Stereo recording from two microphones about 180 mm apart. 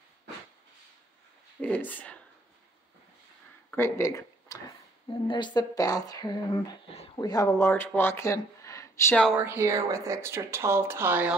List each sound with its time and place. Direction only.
1.6 s speech: 10° left (ahead or behind)
3.7 s speech: 15° left (ahead or behind)
9.3 s speech: 10° right (ahead or behind)